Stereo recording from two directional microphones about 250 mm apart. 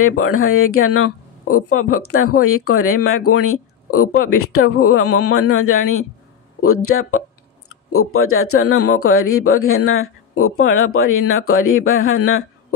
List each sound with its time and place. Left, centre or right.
0.0 s speech: left